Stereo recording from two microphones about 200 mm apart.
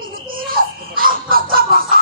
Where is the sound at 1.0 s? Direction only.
45° right (ahead or behind).